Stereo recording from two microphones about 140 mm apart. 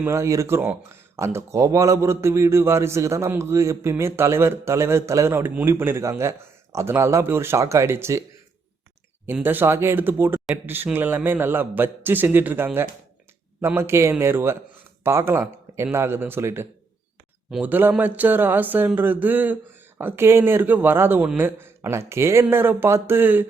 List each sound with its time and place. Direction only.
0.0 s speech: 20° right (ahead or behind)
9.2 s speech: 15° right (ahead or behind)